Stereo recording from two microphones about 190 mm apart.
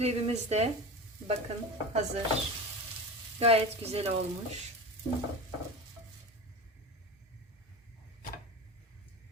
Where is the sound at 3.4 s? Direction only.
30° right (ahead or behind).